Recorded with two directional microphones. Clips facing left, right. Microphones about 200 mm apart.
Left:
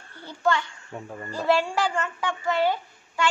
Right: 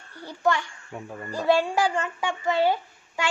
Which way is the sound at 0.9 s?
Centre (ahead or behind).